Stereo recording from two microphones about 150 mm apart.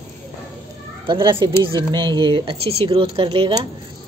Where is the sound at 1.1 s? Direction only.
30° right (ahead or behind).